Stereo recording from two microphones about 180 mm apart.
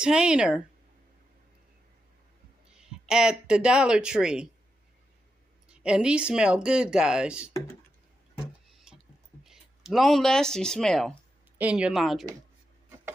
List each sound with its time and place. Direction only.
0.0 s speech: 5° right (ahead or behind)
2.8 s speech: 5° right (ahead or behind)
5.7 s speech: 5° right (ahead or behind)
8.7 s a sound: centre (ahead or behind)
11.5 s speech: 5° right (ahead or behind)